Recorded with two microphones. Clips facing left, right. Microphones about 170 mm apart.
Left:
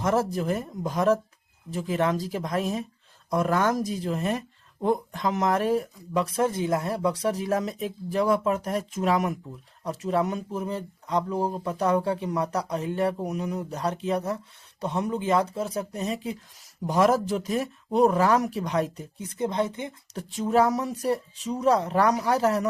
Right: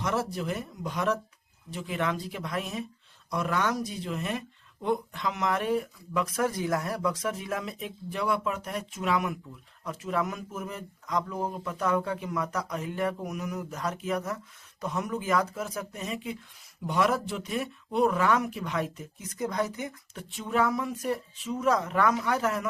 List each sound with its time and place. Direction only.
0.0 s speech: 45° left (ahead or behind); by 20.2 s 25° left (ahead or behind)
20.3 s speech: 40° left (ahead or behind)